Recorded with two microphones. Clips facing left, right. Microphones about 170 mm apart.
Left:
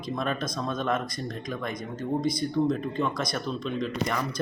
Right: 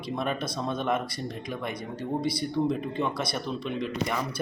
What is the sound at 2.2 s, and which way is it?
Speech, 60° right (ahead or behind).